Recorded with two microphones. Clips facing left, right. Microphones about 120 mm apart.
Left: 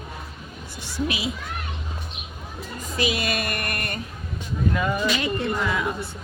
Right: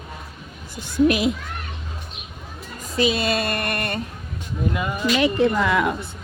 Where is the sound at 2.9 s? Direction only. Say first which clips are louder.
Right 5 dB; 30° right (ahead or behind).